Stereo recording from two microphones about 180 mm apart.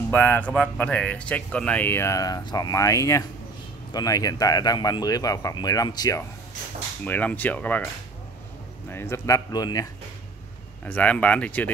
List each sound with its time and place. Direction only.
0.1 s speech: 10° left (ahead or behind)
7.1 s speech: 10° left (ahead or behind)
10.9 s speech: 10° left (ahead or behind)